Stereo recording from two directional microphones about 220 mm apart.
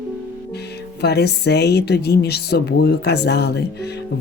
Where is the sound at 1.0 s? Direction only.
50° left (ahead or behind).